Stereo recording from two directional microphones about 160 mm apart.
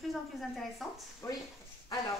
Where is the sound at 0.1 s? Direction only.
Centre (ahead or behind).